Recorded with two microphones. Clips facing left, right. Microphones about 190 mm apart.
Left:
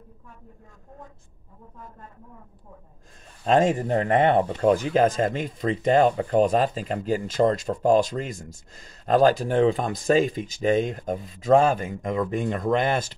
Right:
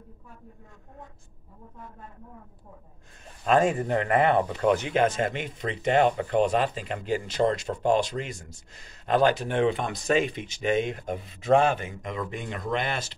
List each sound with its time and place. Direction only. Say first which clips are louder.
3.4 s speech: left 2 dB; 30° left (ahead or behind)
4.5 s speech: left 3 dB; 40° left (ahead or behind)